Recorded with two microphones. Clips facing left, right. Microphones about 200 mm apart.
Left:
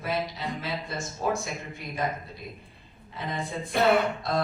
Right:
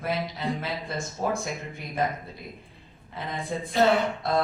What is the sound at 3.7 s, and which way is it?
Speech, 60° left (ahead or behind).